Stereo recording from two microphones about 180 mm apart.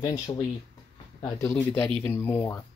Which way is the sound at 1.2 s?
15° left (ahead or behind).